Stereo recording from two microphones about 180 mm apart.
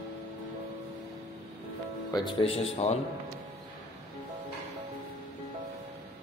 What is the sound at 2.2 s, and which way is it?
Speech, 30° left (ahead or behind).